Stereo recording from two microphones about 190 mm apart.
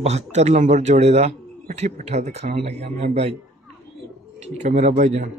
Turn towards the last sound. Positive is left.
turn(degrees=-40)  # may be behind; listen again after turning